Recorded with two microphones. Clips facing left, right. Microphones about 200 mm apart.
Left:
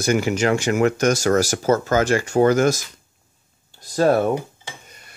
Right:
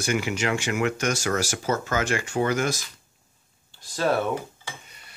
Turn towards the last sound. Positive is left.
turn(degrees=45)  # may be behind; listen again after turning